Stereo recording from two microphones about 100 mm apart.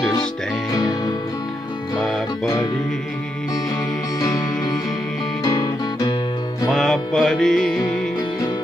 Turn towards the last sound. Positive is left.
turn(degrees=5)  # may be behind; listen again after turning